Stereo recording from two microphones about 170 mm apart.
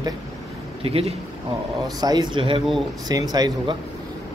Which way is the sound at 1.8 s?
25° right (ahead or behind).